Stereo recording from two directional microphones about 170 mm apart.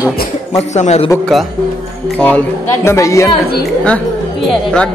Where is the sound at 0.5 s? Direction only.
40° left (ahead or behind).